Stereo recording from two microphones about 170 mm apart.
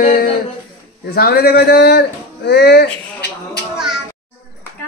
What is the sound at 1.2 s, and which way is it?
Speech, 70° left (ahead or behind).